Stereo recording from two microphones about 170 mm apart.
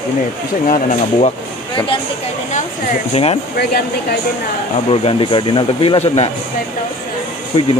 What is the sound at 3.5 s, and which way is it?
Speech, 70° left (ahead or behind).